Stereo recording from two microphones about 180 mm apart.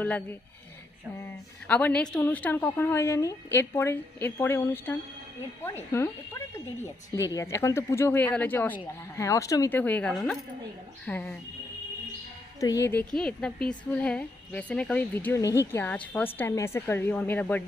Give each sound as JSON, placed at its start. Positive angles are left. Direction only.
{"t": 0.0, "sound": "a woman's voice", "side_deg": 10}
{"t": 12.5, "sound": "a woman's voice", "side_deg": 20}